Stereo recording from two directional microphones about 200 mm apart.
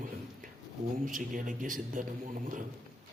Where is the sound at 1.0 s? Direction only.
40° right (ahead or behind).